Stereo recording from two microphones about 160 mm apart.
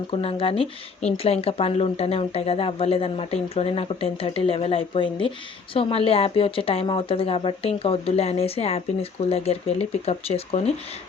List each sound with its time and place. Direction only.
0.1 s speech: 35° left (ahead or behind)